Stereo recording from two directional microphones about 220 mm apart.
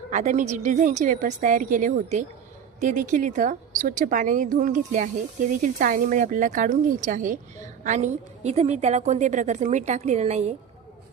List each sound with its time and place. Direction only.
0.1 s speech: 35° right (ahead or behind)